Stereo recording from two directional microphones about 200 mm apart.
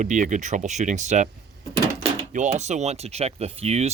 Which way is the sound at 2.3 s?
35° right (ahead or behind).